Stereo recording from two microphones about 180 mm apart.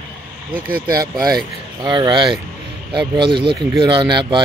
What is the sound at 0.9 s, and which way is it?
Speech, 20° right (ahead or behind).